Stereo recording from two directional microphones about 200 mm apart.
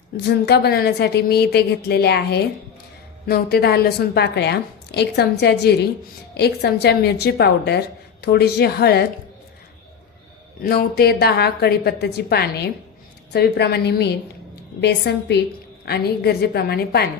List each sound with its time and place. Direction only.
0.3 s a woman's voice: 55° left (ahead or behind)
10.6 s a woman's voice: 50° left (ahead or behind)